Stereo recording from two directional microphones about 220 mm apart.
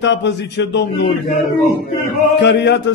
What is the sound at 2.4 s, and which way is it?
Speech, 50° left (ahead or behind).